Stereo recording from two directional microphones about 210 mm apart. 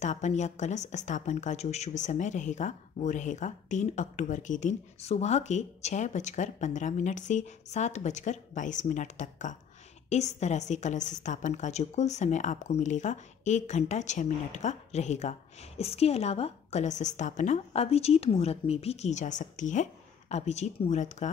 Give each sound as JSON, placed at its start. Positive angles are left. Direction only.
{"t": 0.0, "sound": "a woman's voice", "side_deg": 35}